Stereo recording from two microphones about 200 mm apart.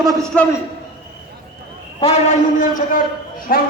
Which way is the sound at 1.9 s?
35° left (ahead or behind).